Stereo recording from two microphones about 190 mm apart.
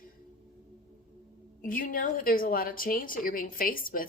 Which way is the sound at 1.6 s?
45° left (ahead or behind).